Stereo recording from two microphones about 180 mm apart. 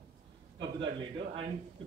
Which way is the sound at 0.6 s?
30° right (ahead or behind).